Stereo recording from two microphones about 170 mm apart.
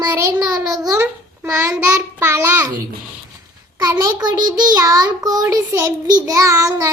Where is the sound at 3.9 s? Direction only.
20° right (ahead or behind).